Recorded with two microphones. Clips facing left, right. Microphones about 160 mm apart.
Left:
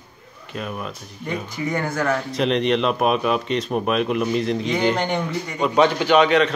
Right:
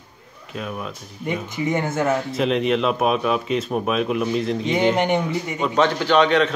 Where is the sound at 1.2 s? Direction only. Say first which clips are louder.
Right 2 dB; 20° right (ahead or behind).